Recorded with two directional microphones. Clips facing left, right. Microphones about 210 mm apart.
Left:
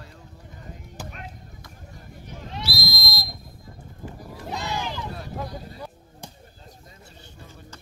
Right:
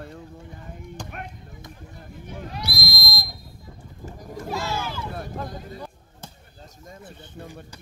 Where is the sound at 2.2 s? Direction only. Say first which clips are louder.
Right 4 dB; 50° right (ahead or behind).